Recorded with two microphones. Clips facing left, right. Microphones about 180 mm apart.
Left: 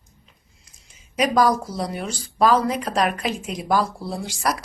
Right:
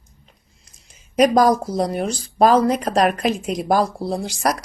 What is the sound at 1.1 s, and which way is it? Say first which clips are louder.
Speech: right 4 dB; 45° right (ahead or behind).